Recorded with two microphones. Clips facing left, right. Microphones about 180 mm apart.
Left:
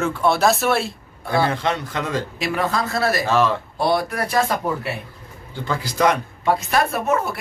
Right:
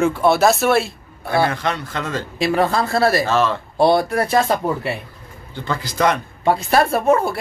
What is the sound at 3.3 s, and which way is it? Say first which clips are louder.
Speech: even; 10° left (ahead or behind).